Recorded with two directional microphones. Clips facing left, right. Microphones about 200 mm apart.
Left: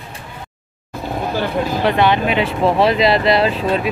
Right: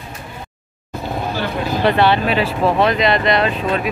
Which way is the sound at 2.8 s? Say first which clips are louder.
Left 3 dB; 30° left (ahead or behind).